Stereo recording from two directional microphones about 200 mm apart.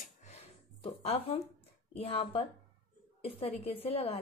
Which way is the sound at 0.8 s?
30° left (ahead or behind).